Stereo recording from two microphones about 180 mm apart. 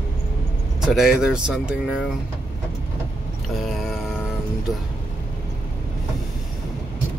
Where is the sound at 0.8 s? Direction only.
Centre (ahead or behind).